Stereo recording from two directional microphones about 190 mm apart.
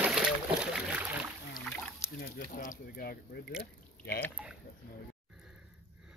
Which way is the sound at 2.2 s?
45° left (ahead or behind).